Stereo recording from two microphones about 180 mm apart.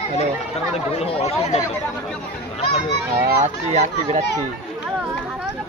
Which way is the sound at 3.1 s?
40° right (ahead or behind).